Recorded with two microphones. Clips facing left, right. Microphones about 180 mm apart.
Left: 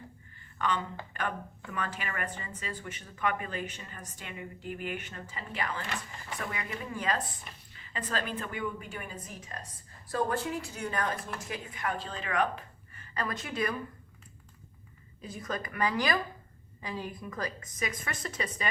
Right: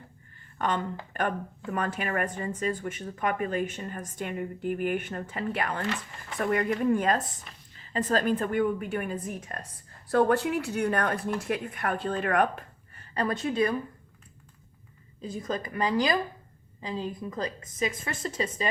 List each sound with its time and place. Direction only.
0.6 s speech: 50° right (ahead or behind)
7.8 s speech: 40° right (ahead or behind)
10.1 s speech: 70° right (ahead or behind); by 13.7 s 30° right (ahead or behind)
15.2 s a woman's voice: 25° right (ahead or behind)